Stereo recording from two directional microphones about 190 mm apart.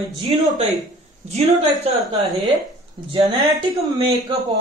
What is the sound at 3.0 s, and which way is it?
A man's voice, 25° right (ahead or behind).